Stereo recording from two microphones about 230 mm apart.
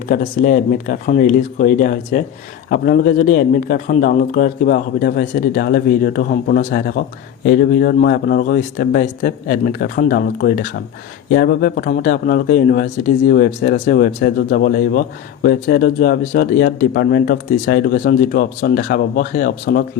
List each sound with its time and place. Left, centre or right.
0.1 s a man's voice: left